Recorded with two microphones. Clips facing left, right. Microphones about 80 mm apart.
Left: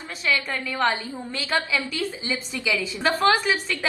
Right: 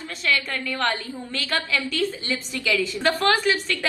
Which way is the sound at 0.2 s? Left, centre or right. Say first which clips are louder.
Even; centre.